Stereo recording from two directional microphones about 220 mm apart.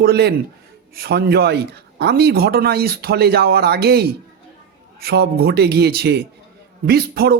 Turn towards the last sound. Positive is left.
turn(degrees=-45)  # may be behind; listen again after turning